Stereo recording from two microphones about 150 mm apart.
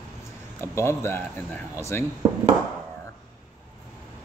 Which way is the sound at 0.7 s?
15° left (ahead or behind).